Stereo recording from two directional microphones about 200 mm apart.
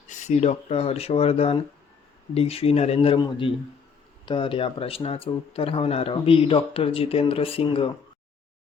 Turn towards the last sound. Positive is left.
turn(degrees=25)  # may be behind; listen again after turning